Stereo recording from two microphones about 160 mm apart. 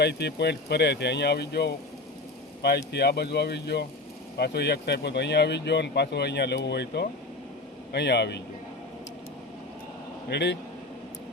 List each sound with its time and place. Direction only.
0.0 s speech: 90° left
10.2 s speech: 90° left